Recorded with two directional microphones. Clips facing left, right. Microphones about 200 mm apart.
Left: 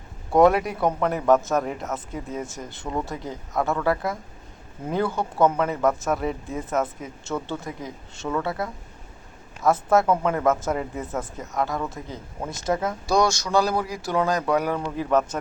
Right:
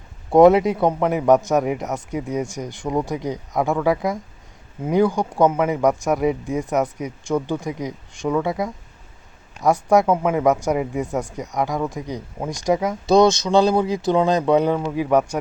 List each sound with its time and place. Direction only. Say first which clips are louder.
0.3 s speech: right 5 dB; 20° right (ahead or behind)
14.8 s speech: right 4 dB; 10° right (ahead or behind)